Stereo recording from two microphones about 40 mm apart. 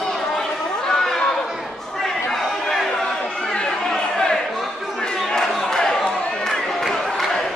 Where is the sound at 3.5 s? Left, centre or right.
Left.